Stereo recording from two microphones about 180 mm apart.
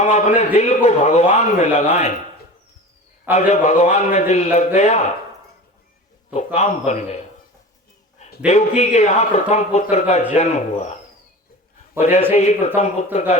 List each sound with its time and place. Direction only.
0.0 s a man's voice: 40° left (ahead or behind)
3.3 s a man's voice: 40° left (ahead or behind)
6.3 s a man's voice: 40° left (ahead or behind)
8.4 s a man's voice: 40° left (ahead or behind)
11.9 s a man's voice: 40° left (ahead or behind)